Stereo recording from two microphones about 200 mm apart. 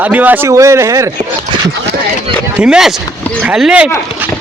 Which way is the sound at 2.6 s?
5° right (ahead or behind).